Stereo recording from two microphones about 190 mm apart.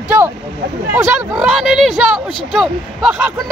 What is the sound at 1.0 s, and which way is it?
Speech, 10° right (ahead or behind).